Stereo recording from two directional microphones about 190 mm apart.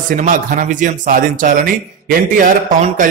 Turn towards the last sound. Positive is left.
turn(degrees=-45)  # may be behind; listen again after turning